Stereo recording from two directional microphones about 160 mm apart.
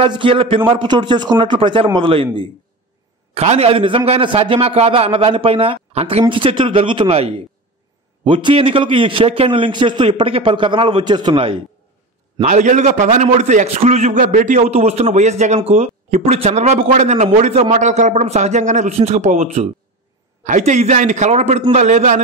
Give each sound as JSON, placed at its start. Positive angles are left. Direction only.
{"t": 0.0, "sound": "a man's voice", "side_deg": -35}
{"t": 3.3, "sound": "a man's voice", "side_deg": -40}
{"t": 12.4, "sound": "a man's voice", "side_deg": -50}